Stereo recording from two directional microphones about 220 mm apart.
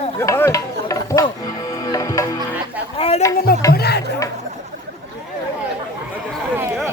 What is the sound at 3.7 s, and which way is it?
Speech, 45° left (ahead or behind).